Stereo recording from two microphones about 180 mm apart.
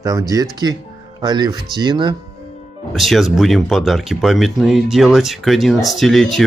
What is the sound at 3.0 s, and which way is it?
Speech, centre (ahead or behind).